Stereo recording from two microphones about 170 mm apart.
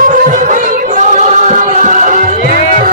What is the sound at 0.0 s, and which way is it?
Music, 50° right (ahead or behind).